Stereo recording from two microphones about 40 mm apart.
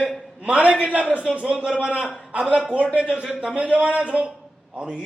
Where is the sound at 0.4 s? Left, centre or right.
Right.